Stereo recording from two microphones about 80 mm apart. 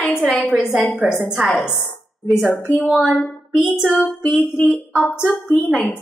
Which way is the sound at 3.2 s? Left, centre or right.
Left.